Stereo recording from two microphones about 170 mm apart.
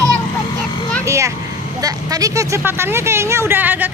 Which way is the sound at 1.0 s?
15° right (ahead or behind).